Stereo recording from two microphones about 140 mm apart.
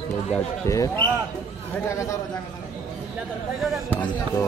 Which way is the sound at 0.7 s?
20° left (ahead or behind).